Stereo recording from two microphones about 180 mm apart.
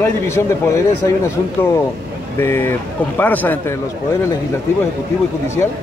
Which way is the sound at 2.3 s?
15° left (ahead or behind).